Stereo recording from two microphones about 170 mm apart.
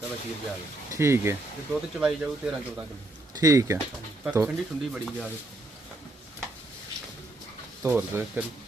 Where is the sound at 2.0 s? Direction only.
5° right (ahead or behind).